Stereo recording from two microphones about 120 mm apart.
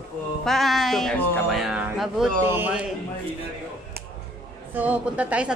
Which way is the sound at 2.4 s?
20° right (ahead or behind).